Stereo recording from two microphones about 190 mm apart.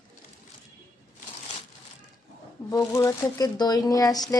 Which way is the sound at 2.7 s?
15° left (ahead or behind).